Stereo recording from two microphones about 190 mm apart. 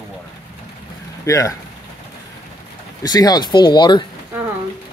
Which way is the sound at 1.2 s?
15° left (ahead or behind).